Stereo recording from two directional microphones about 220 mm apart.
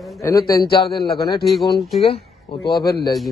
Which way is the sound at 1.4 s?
Centre (ahead or behind).